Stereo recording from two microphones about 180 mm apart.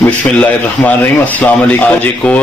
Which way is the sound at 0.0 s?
10° left (ahead or behind).